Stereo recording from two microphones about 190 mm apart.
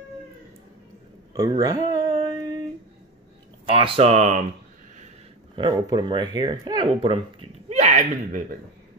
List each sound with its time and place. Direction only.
1.3 s speech: 20° right (ahead or behind)
3.6 s speech: 30° right (ahead or behind)
5.6 s speech: 20° right (ahead or behind); by 8.5 s 40° right (ahead or behind)